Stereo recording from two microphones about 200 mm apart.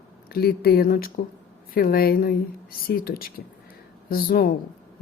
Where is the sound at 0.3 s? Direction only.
50° left (ahead or behind).